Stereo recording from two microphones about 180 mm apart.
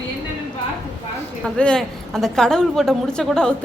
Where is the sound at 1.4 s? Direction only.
5° left (ahead or behind).